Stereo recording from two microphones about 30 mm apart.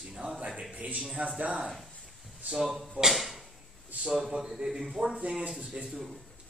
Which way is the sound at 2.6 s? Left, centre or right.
Centre.